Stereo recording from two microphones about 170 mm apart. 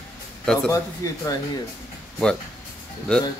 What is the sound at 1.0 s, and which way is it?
Speech, 20° left (ahead or behind).